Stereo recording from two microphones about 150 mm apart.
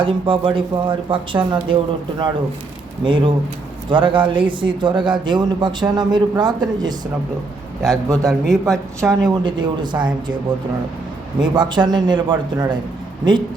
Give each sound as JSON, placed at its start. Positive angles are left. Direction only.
{"t": 0.0, "sound": "a man's voice", "side_deg": -35}
{"t": 8.1, "sound": "a man's voice", "side_deg": -20}
{"t": 8.4, "sound": "speech", "side_deg": 0}
{"t": 9.4, "sound": "a man's voice", "side_deg": -30}
{"t": 11.3, "sound": "a man's voice", "side_deg": -30}